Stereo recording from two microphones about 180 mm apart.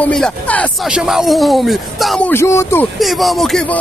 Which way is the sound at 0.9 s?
5° right (ahead or behind).